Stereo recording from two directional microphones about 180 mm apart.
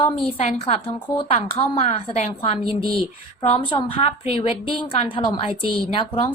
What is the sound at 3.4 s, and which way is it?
A woman's voice, 30° left (ahead or behind).